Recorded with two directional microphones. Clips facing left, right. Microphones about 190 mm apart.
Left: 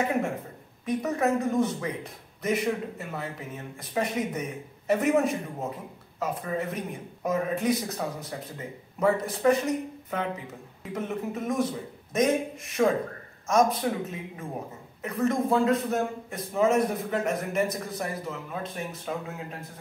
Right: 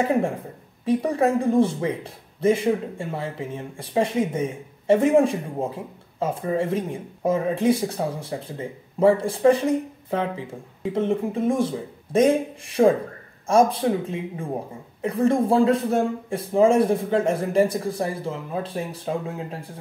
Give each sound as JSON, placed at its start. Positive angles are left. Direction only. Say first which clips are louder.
{"t": 0.0, "sound": "speech", "louder": "right 5 dB", "side_deg": -30}